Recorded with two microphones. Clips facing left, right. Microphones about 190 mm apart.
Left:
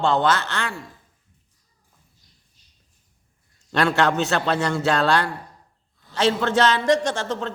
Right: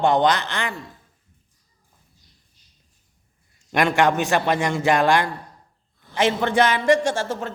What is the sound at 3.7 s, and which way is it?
Speech, 15° right (ahead or behind).